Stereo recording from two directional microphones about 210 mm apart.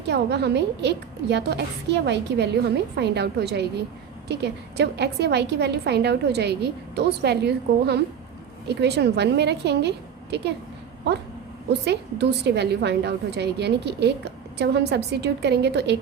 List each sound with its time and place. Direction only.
0.1 s a woman's voice: 55° right (ahead or behind)
11.9 s a woman's voice: 55° right (ahead or behind)